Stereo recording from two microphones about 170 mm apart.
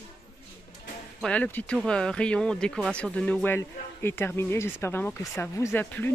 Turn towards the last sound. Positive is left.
turn(degrees=10)  # may be behind; listen again after turning